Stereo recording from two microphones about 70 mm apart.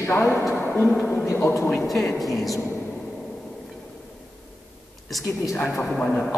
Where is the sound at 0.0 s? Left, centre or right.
Left.